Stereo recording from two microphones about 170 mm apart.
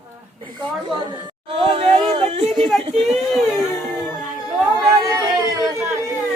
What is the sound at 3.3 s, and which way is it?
Music, centre (ahead or behind).